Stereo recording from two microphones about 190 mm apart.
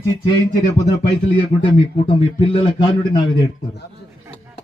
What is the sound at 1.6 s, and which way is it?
A man's voice, 30° left (ahead or behind).